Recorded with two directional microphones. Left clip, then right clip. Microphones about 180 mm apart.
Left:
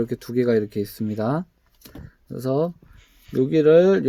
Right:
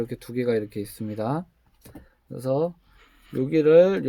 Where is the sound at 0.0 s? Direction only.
40° left (ahead or behind).